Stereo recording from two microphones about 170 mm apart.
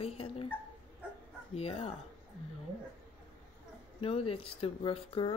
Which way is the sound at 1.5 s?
35° left (ahead or behind).